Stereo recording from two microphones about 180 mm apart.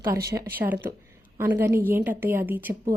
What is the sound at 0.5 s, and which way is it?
A woman's voice, 10° right (ahead or behind).